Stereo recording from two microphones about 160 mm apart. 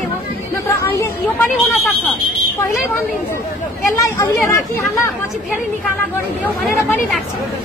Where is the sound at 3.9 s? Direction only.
20° left (ahead or behind).